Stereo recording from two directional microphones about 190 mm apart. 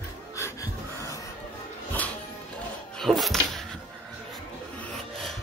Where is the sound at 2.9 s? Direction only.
Centre (ahead or behind).